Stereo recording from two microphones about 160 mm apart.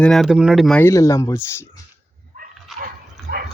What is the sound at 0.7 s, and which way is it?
Speech, 15° left (ahead or behind).